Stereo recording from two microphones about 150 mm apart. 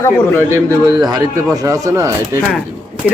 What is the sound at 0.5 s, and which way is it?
Speech, 20° right (ahead or behind).